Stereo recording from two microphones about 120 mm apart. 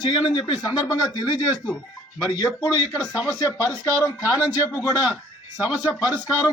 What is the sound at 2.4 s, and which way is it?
A man's voice, 30° left (ahead or behind).